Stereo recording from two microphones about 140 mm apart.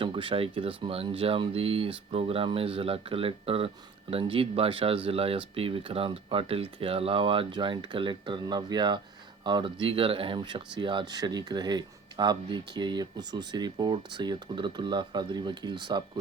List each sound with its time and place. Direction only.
0.0 s speech: 40° right (ahead or behind)